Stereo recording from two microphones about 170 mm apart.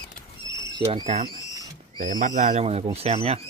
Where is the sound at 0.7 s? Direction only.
25° right (ahead or behind).